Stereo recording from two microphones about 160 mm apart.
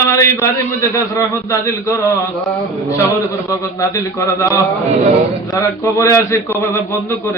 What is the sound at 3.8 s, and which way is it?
Mantra, 20° left (ahead or behind).